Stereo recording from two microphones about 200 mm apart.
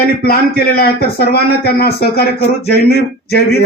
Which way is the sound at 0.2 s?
50° left (ahead or behind).